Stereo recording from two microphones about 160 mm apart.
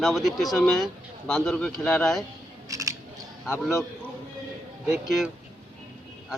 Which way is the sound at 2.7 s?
20° right (ahead or behind).